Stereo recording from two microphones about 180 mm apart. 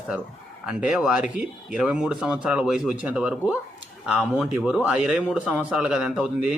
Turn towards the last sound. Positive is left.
turn(degrees=-5)  # may be behind; listen again after turning